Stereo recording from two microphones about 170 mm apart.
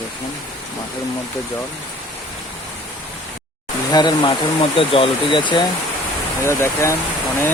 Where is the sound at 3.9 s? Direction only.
25° left (ahead or behind).